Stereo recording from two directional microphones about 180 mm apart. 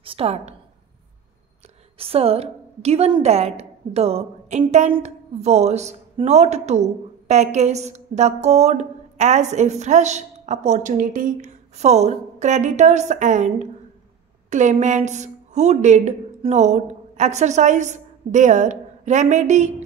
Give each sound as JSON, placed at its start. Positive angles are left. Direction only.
{"t": 0.0, "sound": "a woman's voice", "side_deg": -30}
{"t": 2.0, "sound": "a woman's voice", "side_deg": -35}